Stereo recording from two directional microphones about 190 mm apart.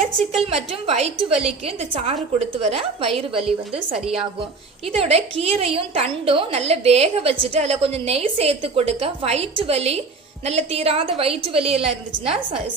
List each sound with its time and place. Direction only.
0.5 s a woman's voice: 30° right (ahead or behind)
3.9 s a woman's voice: 5° right (ahead or behind)
4.9 s a woman's voice: 30° right (ahead or behind)